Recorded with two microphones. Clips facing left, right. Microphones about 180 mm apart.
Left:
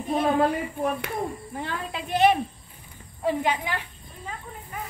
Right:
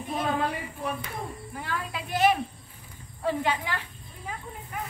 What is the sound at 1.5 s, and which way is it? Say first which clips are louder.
Speech: left 2 dB; 25° left (ahead or behind).